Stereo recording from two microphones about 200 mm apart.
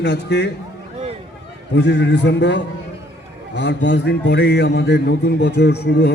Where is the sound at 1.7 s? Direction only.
60° left (ahead or behind).